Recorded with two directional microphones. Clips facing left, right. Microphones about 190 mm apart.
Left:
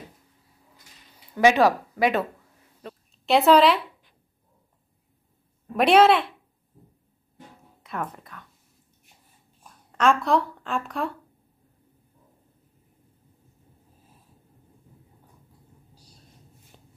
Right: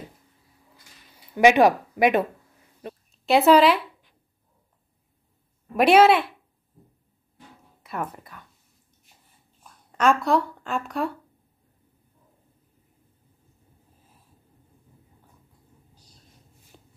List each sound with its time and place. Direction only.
1.3 s speech: 15° right (ahead or behind)
3.3 s a woman's voice: centre (ahead or behind)
5.8 s a woman's voice: 5° right (ahead or behind)
7.8 s a woman's voice: 5° right (ahead or behind)
9.9 s a woman's voice: centre (ahead or behind)